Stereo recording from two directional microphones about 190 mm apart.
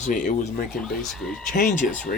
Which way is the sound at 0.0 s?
40° left (ahead or behind).